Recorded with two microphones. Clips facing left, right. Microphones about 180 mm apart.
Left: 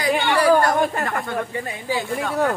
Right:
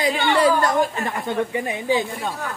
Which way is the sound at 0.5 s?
55° left (ahead or behind).